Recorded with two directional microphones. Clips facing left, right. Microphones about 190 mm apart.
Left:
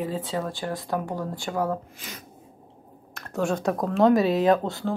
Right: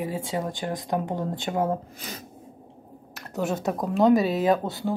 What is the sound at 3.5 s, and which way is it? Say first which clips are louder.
Speech: left 1 dB; centre (ahead or behind).